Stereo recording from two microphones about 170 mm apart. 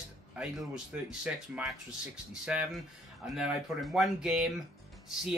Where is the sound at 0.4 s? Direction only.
5° right (ahead or behind).